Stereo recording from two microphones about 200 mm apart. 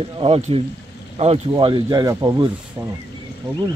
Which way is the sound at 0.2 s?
30° right (ahead or behind).